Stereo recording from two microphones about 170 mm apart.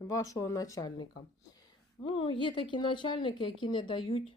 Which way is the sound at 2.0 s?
30° left (ahead or behind).